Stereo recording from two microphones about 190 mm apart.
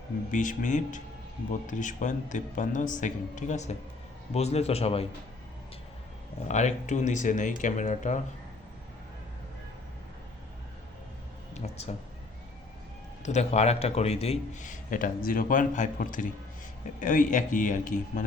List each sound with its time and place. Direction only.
0.3 s a man's voice: 40° left (ahead or behind)
6.5 s a man's voice: 40° left (ahead or behind)
11.5 s speech: 35° left (ahead or behind)
13.2 s a man's voice: 35° left (ahead or behind)